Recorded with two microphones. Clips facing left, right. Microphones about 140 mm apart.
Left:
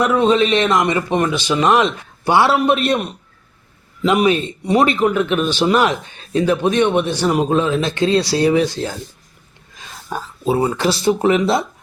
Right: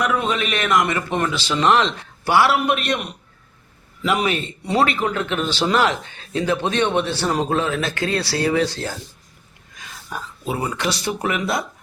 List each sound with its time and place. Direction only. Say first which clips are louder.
0.0 s a man's voice: left 7 dB; 30° left (ahead or behind); by 2.3 s 10° left (ahead or behind)
2.3 s a man's voice: left 3 dB; 25° left (ahead or behind)
4.1 s speech: left 6 dB; 15° left (ahead or behind)
9.7 s speech: left 5 dB; 30° left (ahead or behind)